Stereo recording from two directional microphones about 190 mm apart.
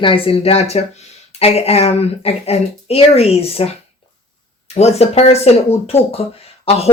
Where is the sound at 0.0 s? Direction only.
30° left (ahead or behind).